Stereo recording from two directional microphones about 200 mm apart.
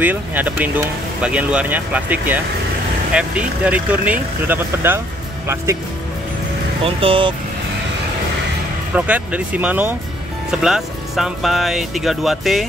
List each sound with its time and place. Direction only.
0.0 s speech: 10° right (ahead or behind)
6.8 s speech: 25° right (ahead or behind)
8.9 s speech: 5° right (ahead or behind)